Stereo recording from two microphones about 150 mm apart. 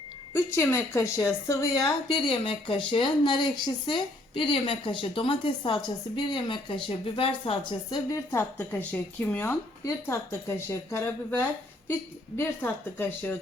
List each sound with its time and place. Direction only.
0.3 s a woman's voice: 15° left (ahead or behind)